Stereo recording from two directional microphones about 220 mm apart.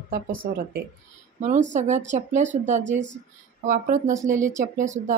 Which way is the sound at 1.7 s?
35° right (ahead or behind).